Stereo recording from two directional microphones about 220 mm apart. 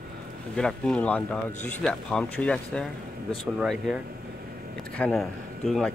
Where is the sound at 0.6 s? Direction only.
5° left (ahead or behind).